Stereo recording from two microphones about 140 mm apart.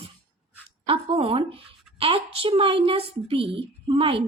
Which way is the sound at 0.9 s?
40° right (ahead or behind).